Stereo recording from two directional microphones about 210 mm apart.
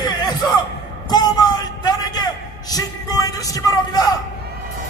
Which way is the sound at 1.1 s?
20° left (ahead or behind).